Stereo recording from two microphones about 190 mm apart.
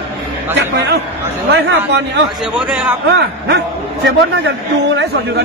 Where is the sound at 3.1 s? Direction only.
60° right (ahead or behind).